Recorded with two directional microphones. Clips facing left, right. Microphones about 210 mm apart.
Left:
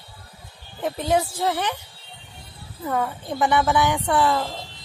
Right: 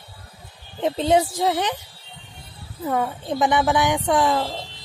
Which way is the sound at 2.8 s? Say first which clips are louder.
Right 2 dB; 15° right (ahead or behind).